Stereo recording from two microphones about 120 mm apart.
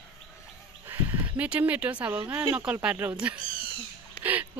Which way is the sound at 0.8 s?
15° right (ahead or behind).